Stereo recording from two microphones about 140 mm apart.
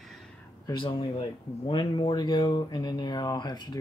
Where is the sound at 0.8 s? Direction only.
35° left (ahead or behind).